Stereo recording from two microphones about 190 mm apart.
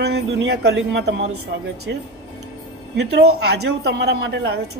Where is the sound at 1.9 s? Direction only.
70° right (ahead or behind).